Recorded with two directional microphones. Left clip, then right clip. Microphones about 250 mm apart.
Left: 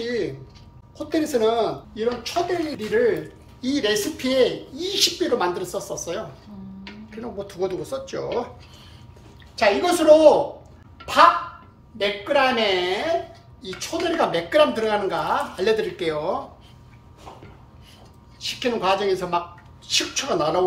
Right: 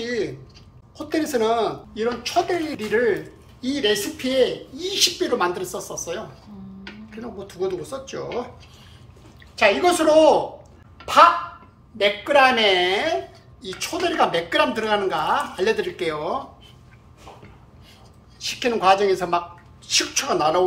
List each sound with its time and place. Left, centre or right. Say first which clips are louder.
0.0 s music: even; centre
0.9 s speech: even; centre
9.6 s speech: right 2 dB; centre
12.0 s speech: right 4 dB; centre
18.4 s speech: right 3 dB; centre